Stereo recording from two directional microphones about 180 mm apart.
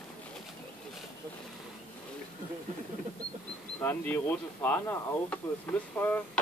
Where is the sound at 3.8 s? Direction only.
10° left (ahead or behind).